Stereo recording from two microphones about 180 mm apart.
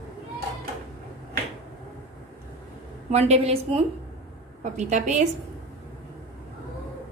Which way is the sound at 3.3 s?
35° right (ahead or behind).